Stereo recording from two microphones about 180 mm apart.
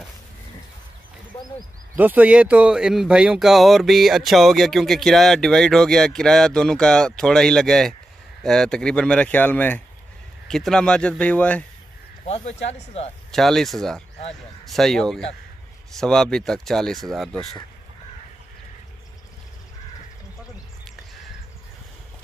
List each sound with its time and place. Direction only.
2.0 s speech: 10° right (ahead or behind); by 11.6 s 5° left (ahead or behind)
12.7 s speech: 35° left (ahead or behind)
13.3 s speech: centre (ahead or behind)